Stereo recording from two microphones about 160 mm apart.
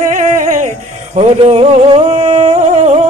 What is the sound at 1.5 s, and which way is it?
Music, 40° right (ahead or behind).